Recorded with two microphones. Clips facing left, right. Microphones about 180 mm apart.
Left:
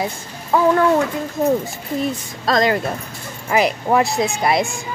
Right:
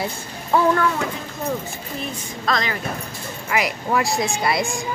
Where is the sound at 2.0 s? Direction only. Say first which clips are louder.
Left 9 dB; 40° left (ahead or behind).